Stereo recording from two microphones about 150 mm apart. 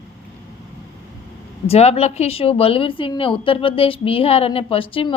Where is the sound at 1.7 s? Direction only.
45° left (ahead or behind).